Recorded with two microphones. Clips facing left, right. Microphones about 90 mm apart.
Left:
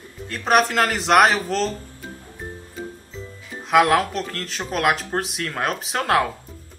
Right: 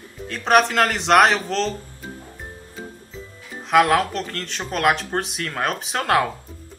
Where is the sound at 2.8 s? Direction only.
Centre (ahead or behind).